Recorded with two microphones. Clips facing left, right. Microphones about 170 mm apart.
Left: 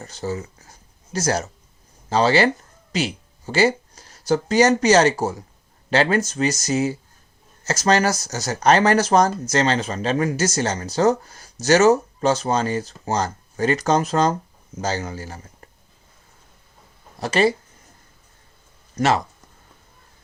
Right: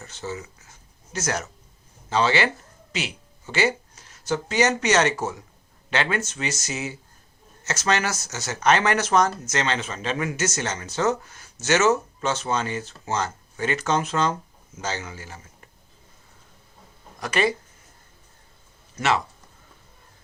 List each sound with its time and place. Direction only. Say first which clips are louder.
0.0 s speech: left 6 dB; 35° left (ahead or behind)
17.2 s speech: left 5 dB; 30° left (ahead or behind)
18.9 s speech: left 4 dB; 40° left (ahead or behind)